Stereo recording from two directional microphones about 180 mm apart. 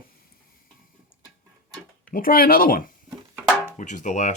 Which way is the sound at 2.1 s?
50° left (ahead or behind).